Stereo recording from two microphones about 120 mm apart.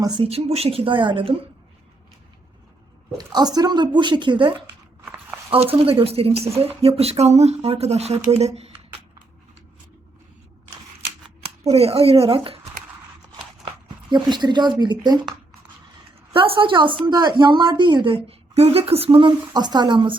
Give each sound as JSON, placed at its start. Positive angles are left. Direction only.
{"t": 0.2, "sound": "a woman's voice", "side_deg": -55}
{"t": 3.2, "sound": "speech", "side_deg": -35}
{"t": 5.0, "sound": "a sound", "side_deg": -15}
{"t": 5.5, "sound": "a woman's voice", "side_deg": -50}
{"t": 11.6, "sound": "speech", "side_deg": -60}
{"t": 13.8, "sound": "speech", "side_deg": -40}
{"t": 16.3, "sound": "a woman's voice", "side_deg": -45}